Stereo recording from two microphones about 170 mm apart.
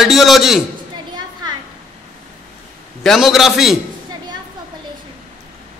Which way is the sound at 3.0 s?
Centre (ahead or behind).